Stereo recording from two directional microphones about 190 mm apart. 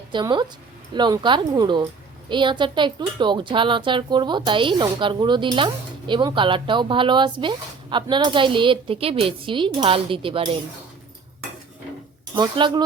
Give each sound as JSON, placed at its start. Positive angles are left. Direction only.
{"t": 0.1, "sound": "speech", "side_deg": -25}
{"t": 12.4, "sound": "speech", "side_deg": -25}